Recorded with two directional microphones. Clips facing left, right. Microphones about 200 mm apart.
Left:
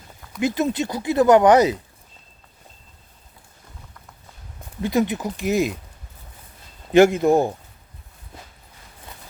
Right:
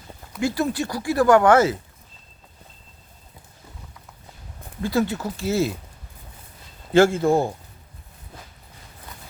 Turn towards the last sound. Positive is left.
turn(degrees=20)  # may be behind; listen again after turning